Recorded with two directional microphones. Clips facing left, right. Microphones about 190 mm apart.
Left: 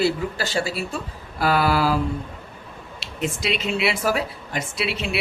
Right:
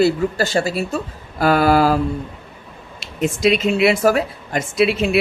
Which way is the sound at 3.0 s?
45° right (ahead or behind).